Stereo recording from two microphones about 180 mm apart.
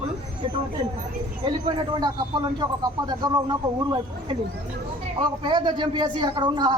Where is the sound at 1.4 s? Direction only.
25° right (ahead or behind).